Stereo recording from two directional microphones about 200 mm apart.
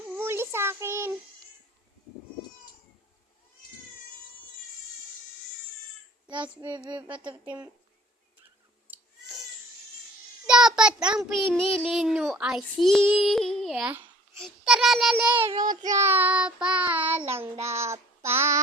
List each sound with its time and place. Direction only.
0.2 s child singing: 10° right (ahead or behind)
6.2 s child singing: 25° right (ahead or behind)
6.6 s speech: 20° right (ahead or behind)
7.4 s child singing: 10° right (ahead or behind)
10.4 s child singing: 5° right (ahead or behind)
14.3 s a child's voice: centre (ahead or behind)
15.3 s speech: 20° right (ahead or behind)
15.7 s child singing: 20° right (ahead or behind)